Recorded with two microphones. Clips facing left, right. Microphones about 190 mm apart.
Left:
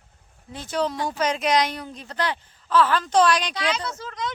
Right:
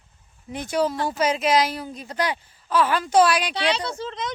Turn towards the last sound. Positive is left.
turn(degrees=-25)  # may be behind; listen again after turning